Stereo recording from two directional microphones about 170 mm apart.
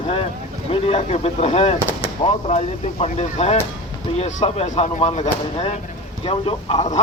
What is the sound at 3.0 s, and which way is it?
Speech, 40° left (ahead or behind).